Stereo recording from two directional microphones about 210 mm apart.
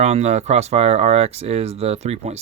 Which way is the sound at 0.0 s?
30° right (ahead or behind).